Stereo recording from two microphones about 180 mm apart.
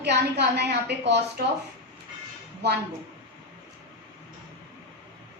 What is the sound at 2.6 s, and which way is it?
Speech, 65° right (ahead or behind).